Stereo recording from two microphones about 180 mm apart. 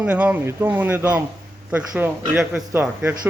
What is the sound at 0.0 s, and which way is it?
A man's voice, 5° right (ahead or behind).